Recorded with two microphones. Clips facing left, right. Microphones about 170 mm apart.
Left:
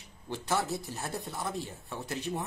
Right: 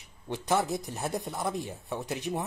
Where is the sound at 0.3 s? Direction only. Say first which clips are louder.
Right 4 dB; 15° right (ahead or behind).